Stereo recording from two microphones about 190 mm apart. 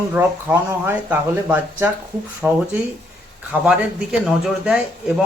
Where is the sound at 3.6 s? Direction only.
5° right (ahead or behind).